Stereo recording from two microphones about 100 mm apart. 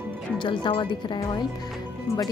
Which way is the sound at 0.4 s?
50° left (ahead or behind).